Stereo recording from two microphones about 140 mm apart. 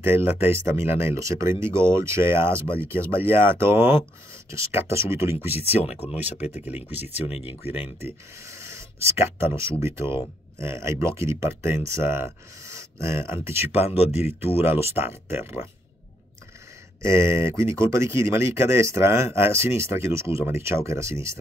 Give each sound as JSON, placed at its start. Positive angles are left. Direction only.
{"t": 0.0, "sound": "speech", "side_deg": -15}
{"t": 5.8, "sound": "speech", "side_deg": 50}
{"t": 6.6, "sound": "speech", "side_deg": -15}
{"t": 7.1, "sound": "speech", "side_deg": 50}
{"t": 8.0, "sound": "speech", "side_deg": -20}
{"t": 13.7, "sound": "speech", "side_deg": 50}
{"t": 15.0, "sound": "speech", "side_deg": -15}
{"t": 17.0, "sound": "speech", "side_deg": -20}